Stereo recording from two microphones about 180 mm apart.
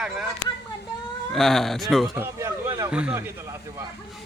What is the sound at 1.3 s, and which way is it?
Speech, centre (ahead or behind).